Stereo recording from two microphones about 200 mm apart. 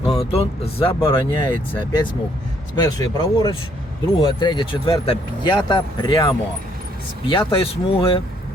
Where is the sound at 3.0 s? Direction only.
20° left (ahead or behind).